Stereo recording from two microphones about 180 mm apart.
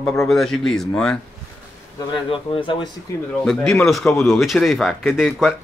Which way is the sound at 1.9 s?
30° left (ahead or behind).